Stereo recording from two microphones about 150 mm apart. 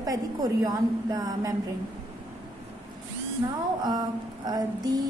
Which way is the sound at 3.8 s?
25° right (ahead or behind).